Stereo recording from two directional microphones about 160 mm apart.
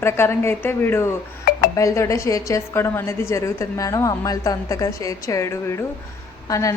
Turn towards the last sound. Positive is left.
turn(degrees=20)  # may be behind; listen again after turning